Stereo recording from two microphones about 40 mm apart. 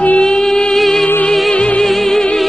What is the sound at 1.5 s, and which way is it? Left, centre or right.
Music, left.